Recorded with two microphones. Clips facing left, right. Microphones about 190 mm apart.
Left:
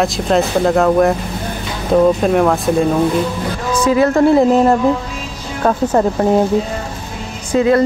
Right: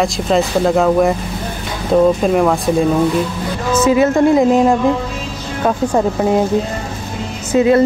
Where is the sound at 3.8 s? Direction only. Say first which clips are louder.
Even; 20° right (ahead or behind).